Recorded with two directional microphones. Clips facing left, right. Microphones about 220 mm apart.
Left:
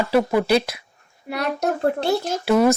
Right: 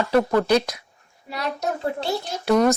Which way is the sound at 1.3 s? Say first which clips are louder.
Left 4 dB; 55° left (ahead or behind).